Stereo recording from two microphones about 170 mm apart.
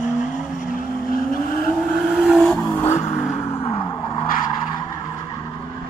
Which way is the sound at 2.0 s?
5° right (ahead or behind).